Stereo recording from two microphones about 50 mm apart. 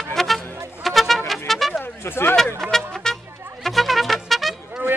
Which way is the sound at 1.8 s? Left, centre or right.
Left.